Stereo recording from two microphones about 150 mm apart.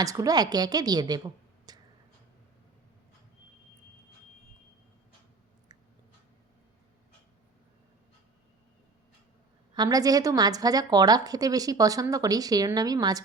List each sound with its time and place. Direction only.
0.0 s speech: 25° right (ahead or behind)
9.7 s a woman's voice: 25° right (ahead or behind)